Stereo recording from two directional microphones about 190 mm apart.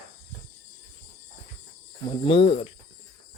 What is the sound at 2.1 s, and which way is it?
Cricket, 30° left (ahead or behind).